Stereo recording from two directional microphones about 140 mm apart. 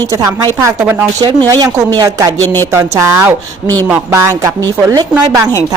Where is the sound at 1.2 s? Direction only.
25° right (ahead or behind).